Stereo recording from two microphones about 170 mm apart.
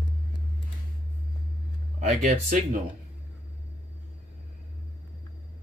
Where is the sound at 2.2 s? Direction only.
50° right (ahead or behind).